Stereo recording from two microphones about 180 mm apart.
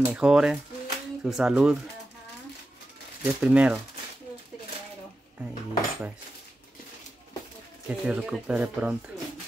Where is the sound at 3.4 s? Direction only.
5° right (ahead or behind).